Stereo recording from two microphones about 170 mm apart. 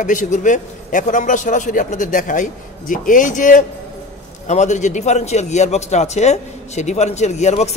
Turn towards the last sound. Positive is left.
turn(degrees=40)  # may be behind; listen again after turning